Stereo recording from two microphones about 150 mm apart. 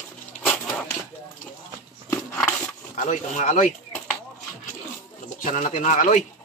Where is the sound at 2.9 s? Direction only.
55° left (ahead or behind).